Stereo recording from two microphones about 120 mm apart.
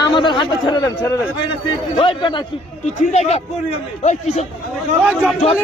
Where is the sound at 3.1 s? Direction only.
65° left (ahead or behind).